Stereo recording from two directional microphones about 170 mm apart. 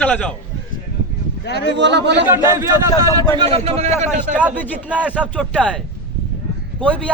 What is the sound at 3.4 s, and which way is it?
A man's voice, 35° right (ahead or behind).